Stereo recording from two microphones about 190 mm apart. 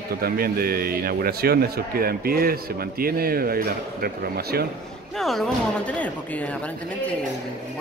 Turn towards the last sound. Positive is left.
turn(degrees=5)  # may be behind; listen again after turning